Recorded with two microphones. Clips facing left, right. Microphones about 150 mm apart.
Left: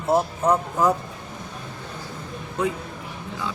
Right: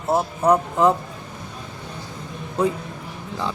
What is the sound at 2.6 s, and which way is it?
Speech, 30° right (ahead or behind).